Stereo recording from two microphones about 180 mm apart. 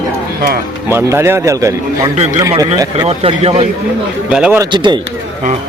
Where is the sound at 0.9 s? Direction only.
15° right (ahead or behind).